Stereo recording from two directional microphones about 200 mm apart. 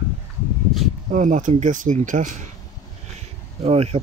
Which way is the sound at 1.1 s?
40° right (ahead or behind).